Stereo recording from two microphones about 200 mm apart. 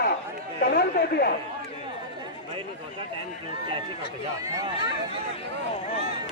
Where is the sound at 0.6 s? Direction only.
50° left (ahead or behind).